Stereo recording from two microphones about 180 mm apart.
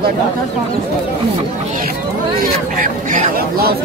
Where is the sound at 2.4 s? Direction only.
50° right (ahead or behind).